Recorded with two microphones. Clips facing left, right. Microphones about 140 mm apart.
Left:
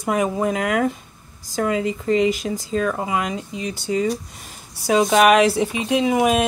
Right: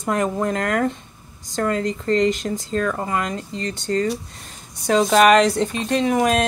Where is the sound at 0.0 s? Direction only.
5° left (ahead or behind).